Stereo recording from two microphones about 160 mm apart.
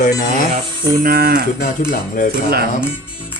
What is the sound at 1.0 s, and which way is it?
Livestock, 70° right (ahead or behind).